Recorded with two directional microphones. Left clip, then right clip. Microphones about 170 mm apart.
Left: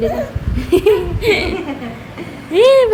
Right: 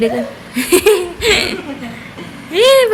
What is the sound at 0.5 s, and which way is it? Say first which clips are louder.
Speech: right 2 dB; 15° right (ahead or behind).